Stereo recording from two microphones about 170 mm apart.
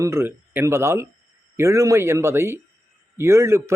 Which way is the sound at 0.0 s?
15° right (ahead or behind).